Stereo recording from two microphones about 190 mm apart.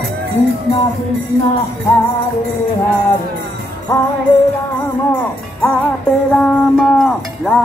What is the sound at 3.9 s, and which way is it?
Music, 15° left (ahead or behind).